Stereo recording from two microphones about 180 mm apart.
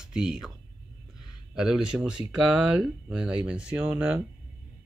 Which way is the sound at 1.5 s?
5° right (ahead or behind).